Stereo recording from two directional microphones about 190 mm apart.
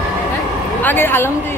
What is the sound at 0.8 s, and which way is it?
Speech, 10° left (ahead or behind).